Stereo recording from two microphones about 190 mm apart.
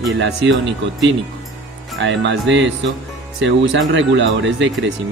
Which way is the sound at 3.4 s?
70° right (ahead or behind).